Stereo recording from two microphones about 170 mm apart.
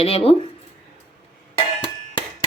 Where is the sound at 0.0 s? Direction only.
35° left (ahead or behind).